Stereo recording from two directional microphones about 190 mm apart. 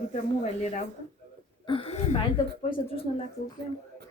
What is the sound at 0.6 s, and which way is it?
Speech, 40° left (ahead or behind).